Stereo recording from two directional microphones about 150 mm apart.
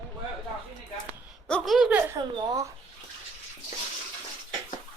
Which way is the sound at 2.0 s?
20° right (ahead or behind).